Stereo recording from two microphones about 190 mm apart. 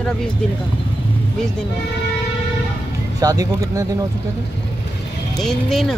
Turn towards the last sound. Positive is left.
turn(degrees=0)  # may be behind; listen again after turning